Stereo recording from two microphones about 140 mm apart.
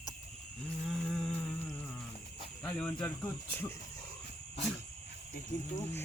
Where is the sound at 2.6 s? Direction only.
10° left (ahead or behind).